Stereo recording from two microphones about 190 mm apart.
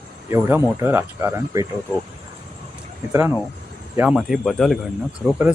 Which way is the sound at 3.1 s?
10° right (ahead or behind).